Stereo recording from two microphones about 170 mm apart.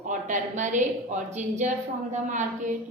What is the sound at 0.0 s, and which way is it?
A woman's voice, 45° right (ahead or behind).